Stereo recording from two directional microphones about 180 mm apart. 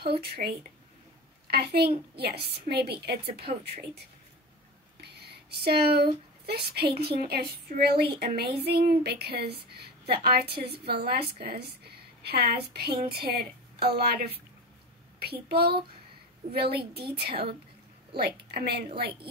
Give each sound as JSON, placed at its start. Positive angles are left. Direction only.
{"t": 0.0, "sound": "a woman's voice", "side_deg": -65}
{"t": 5.0, "sound": "a sound", "side_deg": -65}
{"t": 6.7, "sound": "a woman's voice", "side_deg": -60}